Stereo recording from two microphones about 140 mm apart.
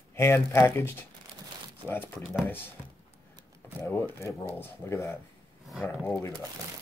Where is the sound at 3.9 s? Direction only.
15° left (ahead or behind).